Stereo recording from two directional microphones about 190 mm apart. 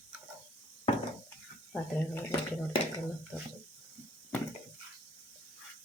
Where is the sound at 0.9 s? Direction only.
35° left (ahead or behind).